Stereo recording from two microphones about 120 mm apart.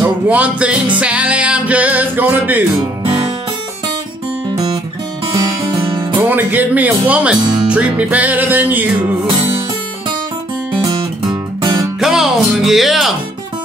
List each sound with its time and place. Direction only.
0.0 s music: 10° right (ahead or behind)
5.6 s music: 45° right (ahead or behind)
6.1 s music: 15° right (ahead or behind)
11.6 s music: 30° right (ahead or behind)
12.0 s speech: 5° right (ahead or behind)